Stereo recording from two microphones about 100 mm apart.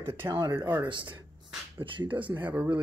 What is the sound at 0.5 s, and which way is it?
Speech, 20° right (ahead or behind).